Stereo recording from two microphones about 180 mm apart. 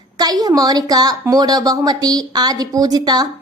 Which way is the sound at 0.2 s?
20° right (ahead or behind).